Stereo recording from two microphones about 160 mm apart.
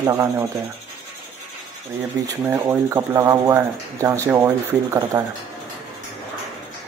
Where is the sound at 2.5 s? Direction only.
15° right (ahead or behind).